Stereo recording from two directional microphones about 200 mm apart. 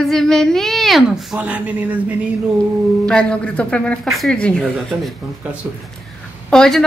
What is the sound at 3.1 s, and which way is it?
A woman's voice, 5° left (ahead or behind).